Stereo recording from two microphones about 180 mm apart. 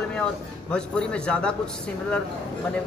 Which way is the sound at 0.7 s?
5° left (ahead or behind).